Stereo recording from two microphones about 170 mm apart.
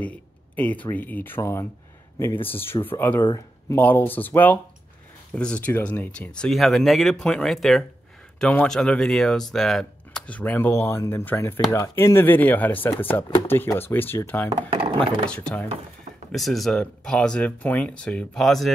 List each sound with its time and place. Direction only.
0.6 s speech: 10° left (ahead or behind)
14.5 s speech: 30° right (ahead or behind)
15.2 s speech: 5° left (ahead or behind)